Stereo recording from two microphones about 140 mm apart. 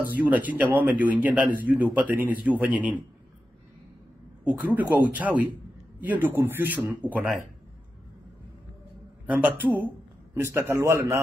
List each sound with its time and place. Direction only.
0.0 s speech: 10° right (ahead or behind)
4.5 s speech: 10° right (ahead or behind)
9.2 s a man's voice: 10° right (ahead or behind)